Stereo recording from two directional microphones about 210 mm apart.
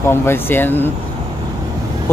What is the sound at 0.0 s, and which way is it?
Speech, 10° left (ahead or behind).